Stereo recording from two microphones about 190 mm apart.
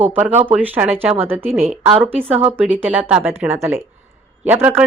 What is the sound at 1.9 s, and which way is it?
Speech, 30° right (ahead or behind).